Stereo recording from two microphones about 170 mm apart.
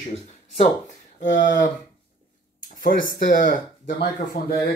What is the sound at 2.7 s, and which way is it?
Speech, 50° left (ahead or behind).